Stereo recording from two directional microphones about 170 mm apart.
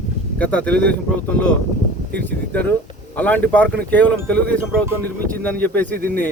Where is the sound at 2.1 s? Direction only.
10° left (ahead or behind).